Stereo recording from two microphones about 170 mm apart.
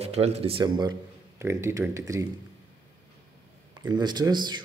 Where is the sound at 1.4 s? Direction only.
15° right (ahead or behind).